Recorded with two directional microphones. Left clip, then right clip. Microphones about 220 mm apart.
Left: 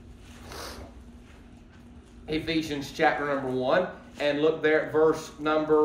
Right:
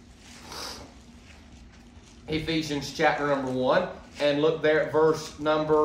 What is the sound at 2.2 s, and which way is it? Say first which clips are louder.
A man's voice: even; 20° right (ahead or behind).